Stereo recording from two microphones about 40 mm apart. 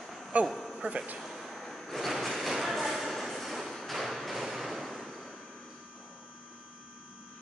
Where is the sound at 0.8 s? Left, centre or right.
Right.